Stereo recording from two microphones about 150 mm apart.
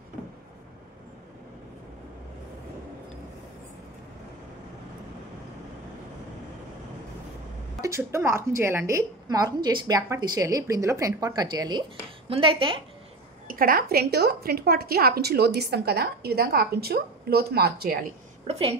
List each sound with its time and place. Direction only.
7.8 s a woman's voice: 20° right (ahead or behind); by 12.8 s 35° right (ahead or behind)
13.5 s a woman's voice: 75° right (ahead or behind); by 17.9 s 90° right
18.5 s a woman's voice: 40° right (ahead or behind)